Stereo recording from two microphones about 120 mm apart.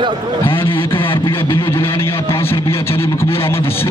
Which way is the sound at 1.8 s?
20° left (ahead or behind).